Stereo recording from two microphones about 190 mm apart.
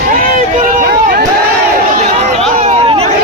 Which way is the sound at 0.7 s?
50° right (ahead or behind).